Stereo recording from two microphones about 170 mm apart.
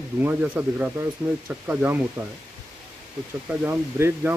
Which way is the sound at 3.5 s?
10° right (ahead or behind).